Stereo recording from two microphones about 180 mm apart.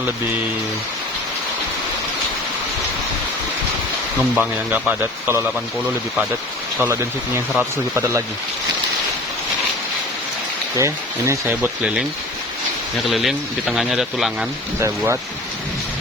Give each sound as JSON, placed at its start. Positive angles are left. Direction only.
{"t": 4.4, "sound": "speech", "side_deg": -10}
{"t": 6.7, "sound": "speech", "side_deg": -15}
{"t": 10.8, "sound": "speech", "side_deg": -15}
{"t": 13.1, "sound": "speech", "side_deg": 0}
{"t": 14.8, "sound": "speech", "side_deg": -15}